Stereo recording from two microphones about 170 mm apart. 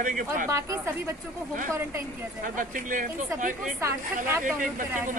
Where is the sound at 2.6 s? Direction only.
50° right (ahead or behind).